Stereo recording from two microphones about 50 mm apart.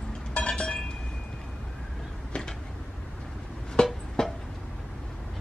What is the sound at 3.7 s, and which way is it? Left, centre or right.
Music, centre.